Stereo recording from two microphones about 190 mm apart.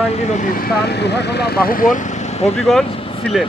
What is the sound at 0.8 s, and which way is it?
Speech, 60° left (ahead or behind).